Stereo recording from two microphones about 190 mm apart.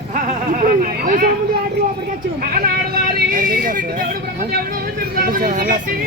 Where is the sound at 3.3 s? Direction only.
45° right (ahead or behind).